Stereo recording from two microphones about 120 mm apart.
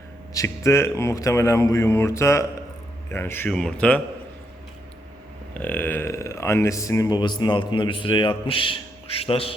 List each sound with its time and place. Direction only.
0.3 s a man's voice: 25° left (ahead or behind)
3.5 s a man's voice: 5° left (ahead or behind)
5.5 s a man's voice: 15° left (ahead or behind); by 9.6 s 50° left (ahead or behind)